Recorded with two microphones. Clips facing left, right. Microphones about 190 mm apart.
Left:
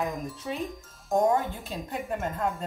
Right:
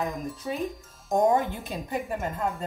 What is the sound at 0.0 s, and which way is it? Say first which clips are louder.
Speech: right 1 dB; centre (ahead or behind).